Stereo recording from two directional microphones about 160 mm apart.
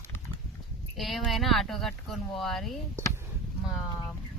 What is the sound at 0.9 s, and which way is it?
Speech, centre (ahead or behind).